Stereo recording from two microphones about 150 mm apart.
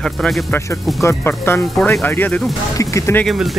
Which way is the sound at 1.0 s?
15° left (ahead or behind).